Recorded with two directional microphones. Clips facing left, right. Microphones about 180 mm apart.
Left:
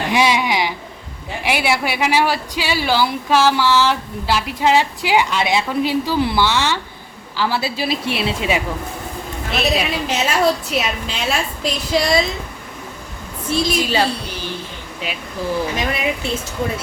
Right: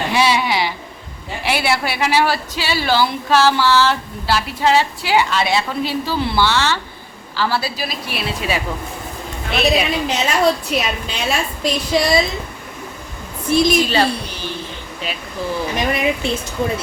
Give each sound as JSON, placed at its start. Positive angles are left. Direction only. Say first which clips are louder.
{"t": 0.1, "sound": "a woman's voice", "louder": "left 1 dB", "side_deg": 15}
{"t": 9.5, "sound": "a woman's voice", "louder": "right 2 dB", "side_deg": 0}
{"t": 13.5, "sound": "speech", "louder": "right 5 dB", "side_deg": -15}
{"t": 13.7, "sound": "speech", "louder": "right 2 dB", "side_deg": 10}
{"t": 15.9, "sound": "speech", "louder": "right 3 dB", "side_deg": -20}